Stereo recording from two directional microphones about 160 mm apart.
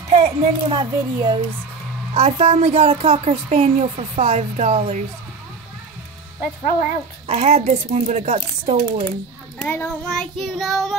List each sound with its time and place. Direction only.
0.1 s a woman's voice: 35° right (ahead or behind)
2.1 s a woman's voice: 40° right (ahead or behind)
7.2 s a woman's voice: 40° right (ahead or behind)
9.6 s a child's voice: 10° left (ahead or behind)
10.3 s child singing: centre (ahead or behind)